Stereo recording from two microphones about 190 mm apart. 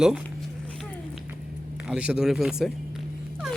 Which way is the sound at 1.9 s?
5° right (ahead or behind).